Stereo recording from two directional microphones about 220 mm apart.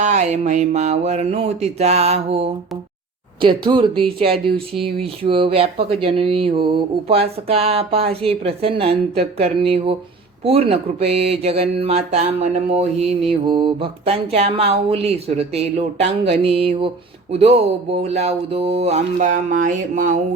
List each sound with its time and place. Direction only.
0.0 s mantra: 30° right (ahead or behind)